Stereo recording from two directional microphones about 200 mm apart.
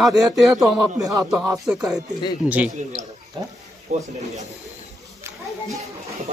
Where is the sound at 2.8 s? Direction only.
35° right (ahead or behind).